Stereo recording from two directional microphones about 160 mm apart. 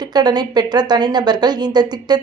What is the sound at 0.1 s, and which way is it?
A woman's voice, 25° right (ahead or behind).